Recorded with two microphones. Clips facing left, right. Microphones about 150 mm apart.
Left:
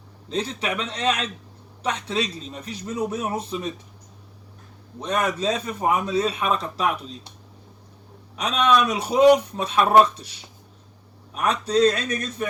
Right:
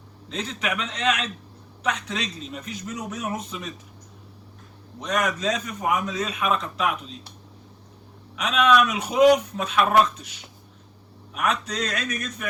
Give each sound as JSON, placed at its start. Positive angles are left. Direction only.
{"t": 0.3, "sound": "speech", "side_deg": 35}
{"t": 4.9, "sound": "speech", "side_deg": 30}
{"t": 8.4, "sound": "speech", "side_deg": 35}